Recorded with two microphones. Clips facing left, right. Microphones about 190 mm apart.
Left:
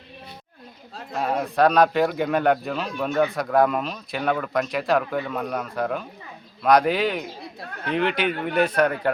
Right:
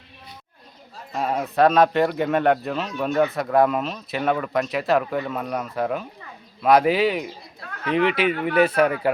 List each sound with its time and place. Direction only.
1.1 s speech: centre (ahead or behind)